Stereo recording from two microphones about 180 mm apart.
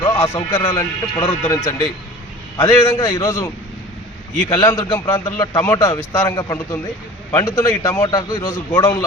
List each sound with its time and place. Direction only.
0.0 s a man's voice: 15° left (ahead or behind)